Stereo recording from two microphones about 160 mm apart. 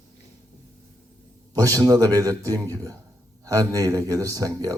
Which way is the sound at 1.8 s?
20° right (ahead or behind).